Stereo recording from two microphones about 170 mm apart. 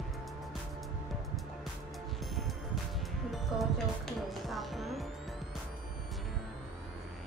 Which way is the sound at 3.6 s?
Centre (ahead or behind).